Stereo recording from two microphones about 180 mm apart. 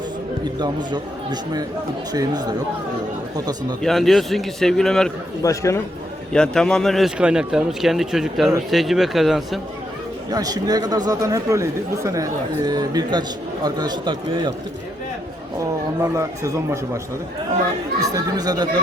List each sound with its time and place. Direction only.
0.6 s speech: 25° right (ahead or behind)
3.8 s a man's voice: centre (ahead or behind)
5.4 s speech: 15° left (ahead or behind)
6.3 s a man's voice: 5° left (ahead or behind)
10.2 s speech: 20° right (ahead or behind)
16.0 s speech: 15° right (ahead or behind)
18.1 s speech: 20° right (ahead or behind)